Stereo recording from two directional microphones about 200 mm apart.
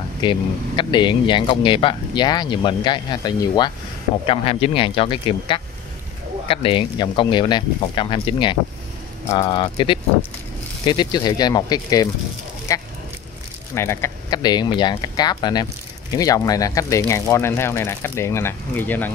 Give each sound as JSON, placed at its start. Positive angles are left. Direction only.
{"t": 0.2, "sound": "speech", "side_deg": 25}